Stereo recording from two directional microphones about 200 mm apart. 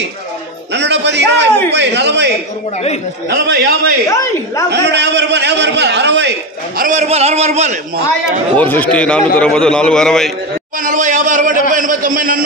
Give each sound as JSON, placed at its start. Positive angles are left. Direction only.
{"t": 0.7, "sound": "music", "side_deg": -60}
{"t": 1.7, "sound": "a man's voice", "side_deg": -60}
{"t": 4.1, "sound": "speech", "side_deg": 15}
{"t": 4.6, "sound": "a man's voice", "side_deg": -60}
{"t": 6.8, "sound": "speech", "side_deg": -35}
{"t": 8.5, "sound": "a man's voice", "side_deg": 10}
{"t": 10.8, "sound": "a man's voice", "side_deg": -40}